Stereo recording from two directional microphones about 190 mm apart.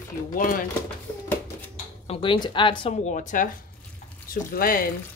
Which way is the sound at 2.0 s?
25° left (ahead or behind).